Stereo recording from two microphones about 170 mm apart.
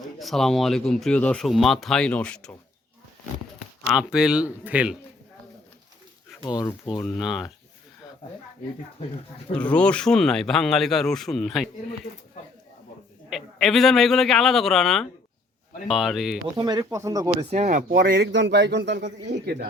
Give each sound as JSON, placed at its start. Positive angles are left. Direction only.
{"t": 0.2, "sound": "speech", "side_deg": 0}
{"t": 3.9, "sound": "speech", "side_deg": -5}
{"t": 6.4, "sound": "speech", "side_deg": 25}
{"t": 6.9, "sound": "speech", "side_deg": 0}
{"t": 9.5, "sound": "speech", "side_deg": 5}
{"t": 13.3, "sound": "speech", "side_deg": 0}
{"t": 16.6, "sound": "speech", "side_deg": -25}
{"t": 17.5, "sound": "speech", "side_deg": -45}
{"t": 17.9, "sound": "a man's voice", "side_deg": -70}